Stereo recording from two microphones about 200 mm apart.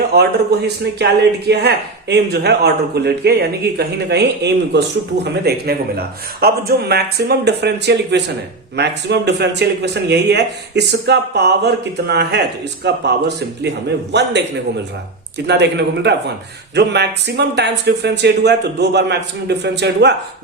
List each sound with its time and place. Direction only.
0.1 s speech: 55° right (ahead or behind)
15.4 s speech: 60° right (ahead or behind)